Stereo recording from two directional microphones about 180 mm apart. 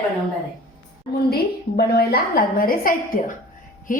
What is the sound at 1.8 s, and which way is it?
A woman's voice, 60° left (ahead or behind).